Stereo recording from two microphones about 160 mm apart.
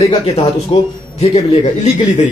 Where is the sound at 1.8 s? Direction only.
50° left (ahead or behind).